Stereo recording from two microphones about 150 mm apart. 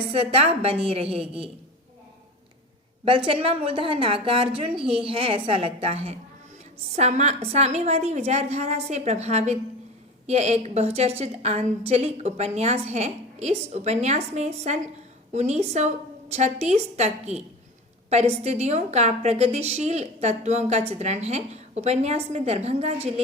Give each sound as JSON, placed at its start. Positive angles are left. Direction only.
{"t": 0.1, "sound": "a woman's voice", "side_deg": -40}
{"t": 3.0, "sound": "a woman's voice", "side_deg": -35}